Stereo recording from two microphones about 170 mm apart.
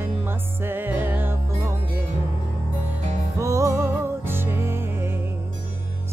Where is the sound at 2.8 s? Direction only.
15° right (ahead or behind).